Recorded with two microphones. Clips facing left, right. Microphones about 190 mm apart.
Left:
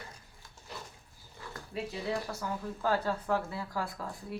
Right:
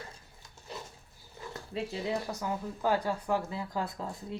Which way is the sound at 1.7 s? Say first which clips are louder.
Right 1 dB; 20° right (ahead or behind).